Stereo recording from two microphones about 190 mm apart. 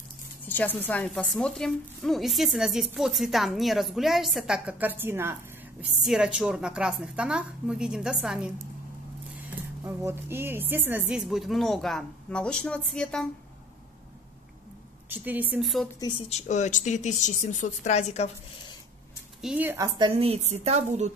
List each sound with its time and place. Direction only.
0.5 s a woman's voice: 10° left (ahead or behind)
9.8 s a woman's voice: 10° right (ahead or behind); by 13.3 s 5° left (ahead or behind)
15.0 s speech: 10° right (ahead or behind)
16.0 s speech: 25° left (ahead or behind)
19.4 s speech: 10° right (ahead or behind)
20.0 s a woman's voice: 30° right (ahead or behind)